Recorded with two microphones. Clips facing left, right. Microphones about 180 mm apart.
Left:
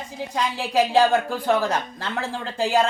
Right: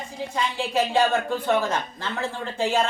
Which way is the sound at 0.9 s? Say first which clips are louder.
Left 3 dB; 35° left (ahead or behind).